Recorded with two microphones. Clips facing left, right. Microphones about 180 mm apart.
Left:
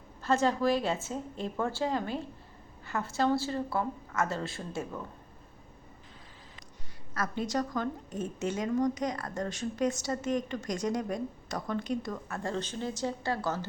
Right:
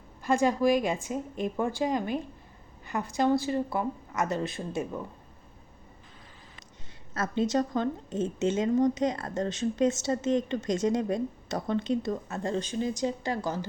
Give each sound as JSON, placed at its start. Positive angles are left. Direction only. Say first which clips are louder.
{"t": 0.2, "sound": "a woman's voice", "louder": "right 3 dB", "side_deg": -15}
{"t": 7.1, "sound": "speech", "louder": "right 5 dB", "side_deg": -25}